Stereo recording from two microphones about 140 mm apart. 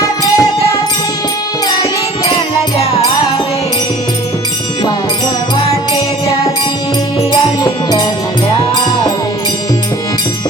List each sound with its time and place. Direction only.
0.0 s music: 25° left (ahead or behind)
7.6 s music: 30° left (ahead or behind)